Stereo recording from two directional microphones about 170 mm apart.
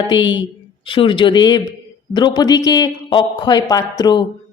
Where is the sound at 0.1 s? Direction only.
25° left (ahead or behind).